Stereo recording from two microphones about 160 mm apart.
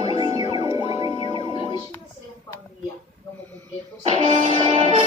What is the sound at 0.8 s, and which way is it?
Music, 35° left (ahead or behind).